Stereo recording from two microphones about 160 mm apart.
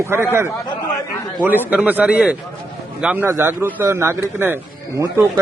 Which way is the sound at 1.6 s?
10° right (ahead or behind).